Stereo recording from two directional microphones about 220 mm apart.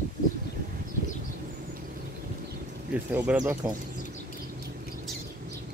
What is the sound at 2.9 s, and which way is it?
Speech, 5° right (ahead or behind).